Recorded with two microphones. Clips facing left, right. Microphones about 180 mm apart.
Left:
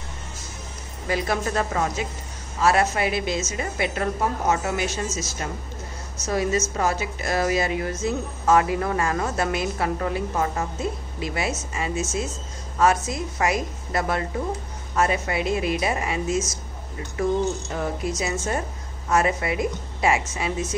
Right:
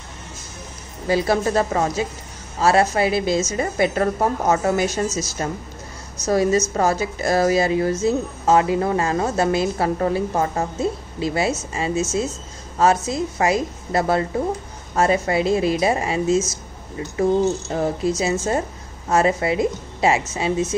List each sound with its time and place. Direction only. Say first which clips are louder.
1.0 s a woman's voice: right 6 dB; 30° right (ahead or behind)